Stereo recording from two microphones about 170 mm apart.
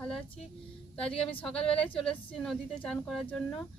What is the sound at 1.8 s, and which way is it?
Speech, 5° left (ahead or behind).